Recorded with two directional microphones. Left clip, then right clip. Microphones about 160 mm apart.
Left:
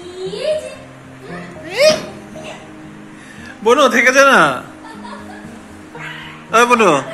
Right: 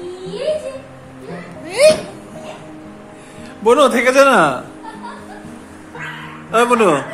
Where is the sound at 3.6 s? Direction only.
10° right (ahead or behind).